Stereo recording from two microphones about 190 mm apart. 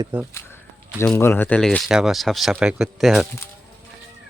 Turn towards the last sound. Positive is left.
turn(degrees=0)  # may be behind; listen again after turning